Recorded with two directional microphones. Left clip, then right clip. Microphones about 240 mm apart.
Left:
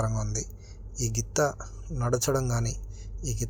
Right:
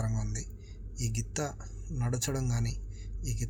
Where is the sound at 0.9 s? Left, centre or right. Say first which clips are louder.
Left 9 dB; centre.